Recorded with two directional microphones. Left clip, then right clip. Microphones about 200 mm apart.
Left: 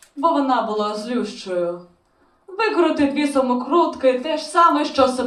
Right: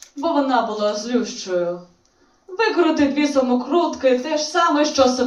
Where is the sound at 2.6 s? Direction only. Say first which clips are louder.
Right 1 dB; 45° left (ahead or behind).